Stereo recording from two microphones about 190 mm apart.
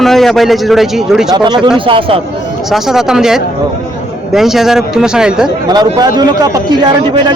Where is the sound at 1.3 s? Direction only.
20° right (ahead or behind).